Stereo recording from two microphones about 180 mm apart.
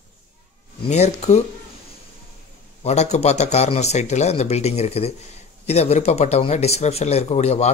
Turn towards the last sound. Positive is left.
turn(degrees=35)  # may be behind; listen again after turning